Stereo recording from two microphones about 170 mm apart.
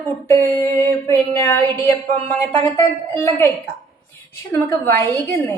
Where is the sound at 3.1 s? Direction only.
10° left (ahead or behind).